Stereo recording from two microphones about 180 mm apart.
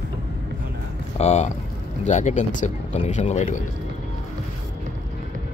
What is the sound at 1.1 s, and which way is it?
Speech, 40° left (ahead or behind).